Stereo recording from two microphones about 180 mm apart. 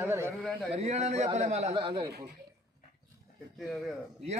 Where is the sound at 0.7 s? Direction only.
35° right (ahead or behind).